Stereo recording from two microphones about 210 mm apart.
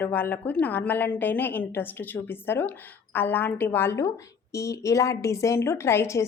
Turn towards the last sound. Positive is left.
turn(degrees=10)  # may be behind; listen again after turning